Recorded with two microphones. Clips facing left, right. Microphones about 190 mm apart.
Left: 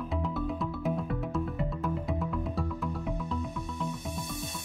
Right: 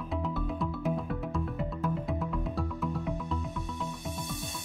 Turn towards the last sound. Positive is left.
turn(degrees=0)  # may be behind; listen again after turning